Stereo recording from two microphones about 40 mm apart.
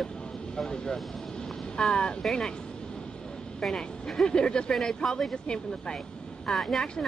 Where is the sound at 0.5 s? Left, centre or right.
Centre.